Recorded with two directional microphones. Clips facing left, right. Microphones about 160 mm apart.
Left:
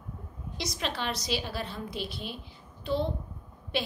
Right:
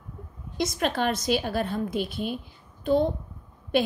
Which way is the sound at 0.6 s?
50° right (ahead or behind).